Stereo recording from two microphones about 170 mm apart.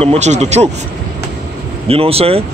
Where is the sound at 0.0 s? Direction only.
40° right (ahead or behind).